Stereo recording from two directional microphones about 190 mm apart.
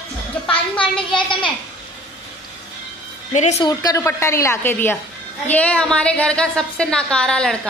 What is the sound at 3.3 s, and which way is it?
Speech, 40° left (ahead or behind).